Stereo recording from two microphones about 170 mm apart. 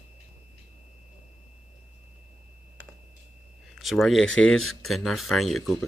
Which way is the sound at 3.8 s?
Centre (ahead or behind).